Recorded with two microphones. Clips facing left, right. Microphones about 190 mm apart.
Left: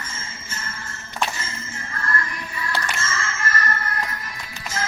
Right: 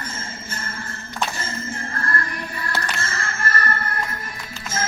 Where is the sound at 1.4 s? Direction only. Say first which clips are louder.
Right 5 dB; 55° right (ahead or behind).